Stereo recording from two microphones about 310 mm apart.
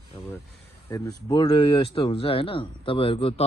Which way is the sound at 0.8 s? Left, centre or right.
Centre.